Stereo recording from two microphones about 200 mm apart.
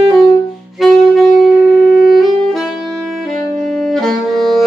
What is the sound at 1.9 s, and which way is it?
Saxophone, 45° left (ahead or behind).